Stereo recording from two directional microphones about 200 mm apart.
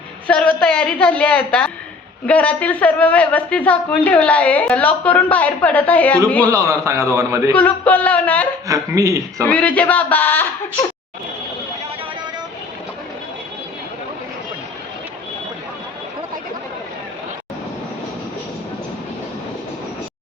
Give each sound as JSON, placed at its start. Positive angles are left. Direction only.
{"t": 0.3, "sound": "a woman's voice", "side_deg": 5}
{"t": 6.5, "sound": "a man's voice", "side_deg": -15}
{"t": 7.5, "sound": "a woman's voice", "side_deg": 10}
{"t": 8.6, "sound": "a man's voice", "side_deg": -15}
{"t": 9.4, "sound": "a woman's voice", "side_deg": 10}